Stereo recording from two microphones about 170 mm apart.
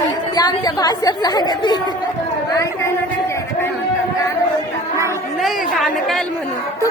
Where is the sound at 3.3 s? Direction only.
15° left (ahead or behind).